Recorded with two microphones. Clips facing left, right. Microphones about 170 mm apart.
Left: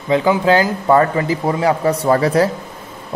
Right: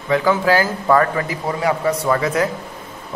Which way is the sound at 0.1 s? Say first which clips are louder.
Left 2 dB; 20° left (ahead or behind).